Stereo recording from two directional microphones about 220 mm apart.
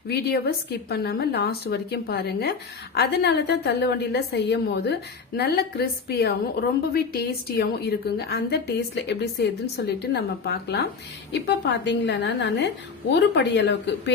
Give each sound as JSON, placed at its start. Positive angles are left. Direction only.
{"t": 0.1, "sound": "a woman's voice", "side_deg": 45}